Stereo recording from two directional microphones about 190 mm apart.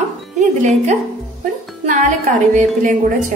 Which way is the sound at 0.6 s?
35° right (ahead or behind).